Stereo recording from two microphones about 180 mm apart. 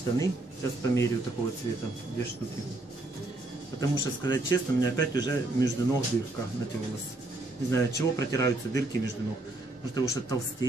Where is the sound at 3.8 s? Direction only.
15° left (ahead or behind).